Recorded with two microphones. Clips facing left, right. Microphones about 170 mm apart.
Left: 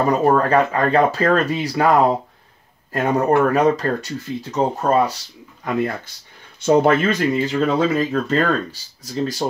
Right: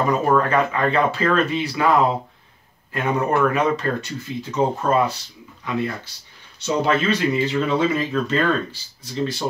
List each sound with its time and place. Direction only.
0.1 s speech: 35° left (ahead or behind)